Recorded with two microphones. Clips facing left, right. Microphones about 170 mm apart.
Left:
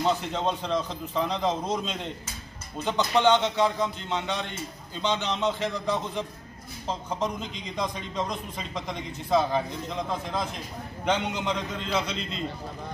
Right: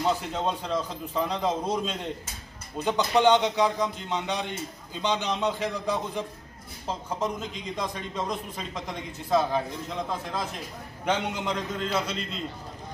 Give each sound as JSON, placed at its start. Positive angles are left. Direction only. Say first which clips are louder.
{"t": 0.0, "sound": "a man's voice", "louder": "left 1 dB", "side_deg": -5}